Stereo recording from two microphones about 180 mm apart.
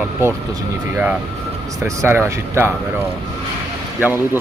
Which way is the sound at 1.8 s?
15° right (ahead or behind).